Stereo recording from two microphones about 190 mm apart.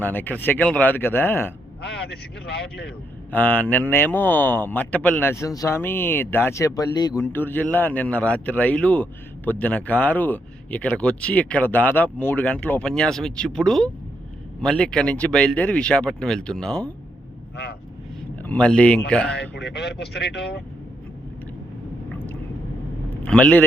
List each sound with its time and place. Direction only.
0.0 s speech: 10° left (ahead or behind)
1.8 s speech: 65° left (ahead or behind)
3.3 s speech: 10° left (ahead or behind)
18.4 s speech: 5° left (ahead or behind)
19.4 s speech: 60° left (ahead or behind)
23.0 s speech: 5° left (ahead or behind)